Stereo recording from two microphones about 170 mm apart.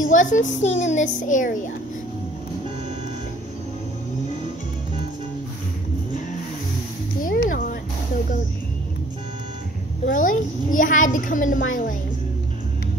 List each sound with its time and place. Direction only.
0.0 s a child's voice: 50° left (ahead or behind)
7.2 s a sound: 55° left (ahead or behind)
10.0 s a child's voice: 50° left (ahead or behind)